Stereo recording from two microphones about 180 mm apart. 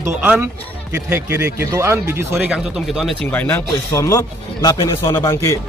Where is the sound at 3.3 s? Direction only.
10° left (ahead or behind).